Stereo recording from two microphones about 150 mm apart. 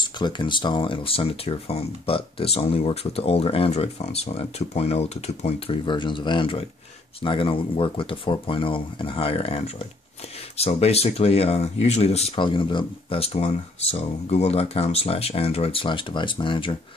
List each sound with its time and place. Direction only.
0.0 s speech: 30° left (ahead or behind)
5.9 s speech: 30° left (ahead or behind)
10.6 s speech: 45° left (ahead or behind)